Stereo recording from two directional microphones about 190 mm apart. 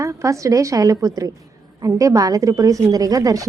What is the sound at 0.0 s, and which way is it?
A woman's voice, 15° right (ahead or behind).